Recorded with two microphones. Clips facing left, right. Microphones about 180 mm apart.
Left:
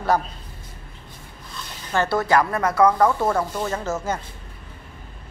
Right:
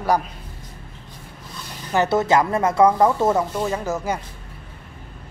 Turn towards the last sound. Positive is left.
turn(degrees=-15)  # may be behind; listen again after turning